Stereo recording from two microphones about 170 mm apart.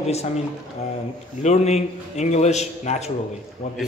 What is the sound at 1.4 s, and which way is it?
A man's voice, 40° left (ahead or behind).